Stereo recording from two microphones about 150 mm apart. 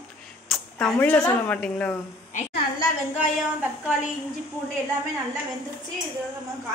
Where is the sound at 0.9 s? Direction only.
10° left (ahead or behind).